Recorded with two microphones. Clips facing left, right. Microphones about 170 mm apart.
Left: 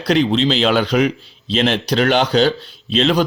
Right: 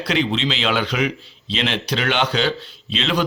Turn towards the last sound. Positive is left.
turn(degrees=40)  # may be behind; listen again after turning